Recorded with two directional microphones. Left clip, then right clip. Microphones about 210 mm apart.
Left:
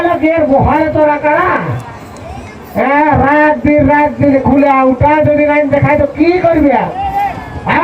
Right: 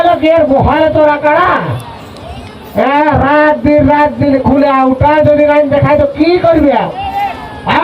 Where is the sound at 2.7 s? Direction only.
35° right (ahead or behind).